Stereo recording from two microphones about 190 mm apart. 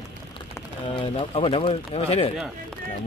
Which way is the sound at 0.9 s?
30° left (ahead or behind).